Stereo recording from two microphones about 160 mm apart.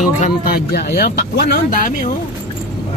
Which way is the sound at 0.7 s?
85° left.